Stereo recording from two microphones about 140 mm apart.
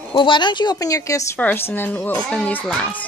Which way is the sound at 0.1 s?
35° left (ahead or behind).